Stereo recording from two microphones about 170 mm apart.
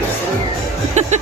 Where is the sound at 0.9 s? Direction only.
45° right (ahead or behind).